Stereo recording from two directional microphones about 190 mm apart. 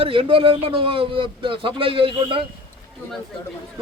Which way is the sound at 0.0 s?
30° right (ahead or behind).